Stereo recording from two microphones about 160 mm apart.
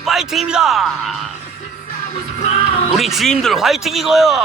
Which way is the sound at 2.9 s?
Centre (ahead or behind).